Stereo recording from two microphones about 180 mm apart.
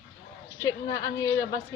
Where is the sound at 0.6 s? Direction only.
20° left (ahead or behind).